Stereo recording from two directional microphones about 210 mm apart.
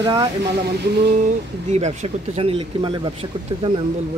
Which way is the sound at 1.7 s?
30° right (ahead or behind).